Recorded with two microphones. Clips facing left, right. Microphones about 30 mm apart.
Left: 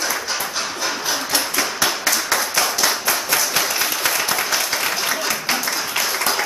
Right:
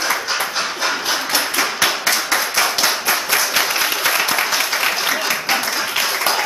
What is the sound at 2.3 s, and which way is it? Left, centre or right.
Clapping, centre.